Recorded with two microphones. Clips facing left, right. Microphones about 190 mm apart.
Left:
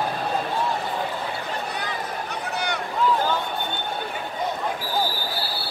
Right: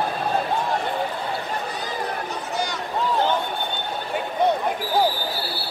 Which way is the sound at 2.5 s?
60° left (ahead or behind).